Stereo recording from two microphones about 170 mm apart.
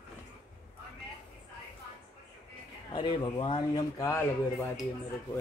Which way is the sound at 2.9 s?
30° left (ahead or behind).